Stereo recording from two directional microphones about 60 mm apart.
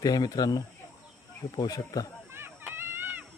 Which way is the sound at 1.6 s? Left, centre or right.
Left.